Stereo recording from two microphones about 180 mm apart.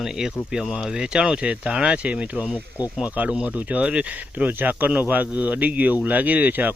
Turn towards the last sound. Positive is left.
turn(degrees=-10)  # may be behind; listen again after turning